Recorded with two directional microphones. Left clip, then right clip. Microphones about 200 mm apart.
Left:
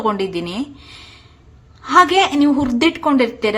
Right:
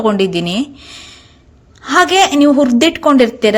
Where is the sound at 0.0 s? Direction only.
20° right (ahead or behind).